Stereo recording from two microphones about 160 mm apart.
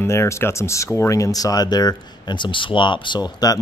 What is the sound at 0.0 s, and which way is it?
Speech, 15° left (ahead or behind).